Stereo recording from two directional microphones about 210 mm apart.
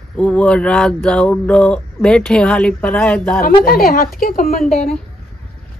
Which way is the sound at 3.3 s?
45° left (ahead or behind).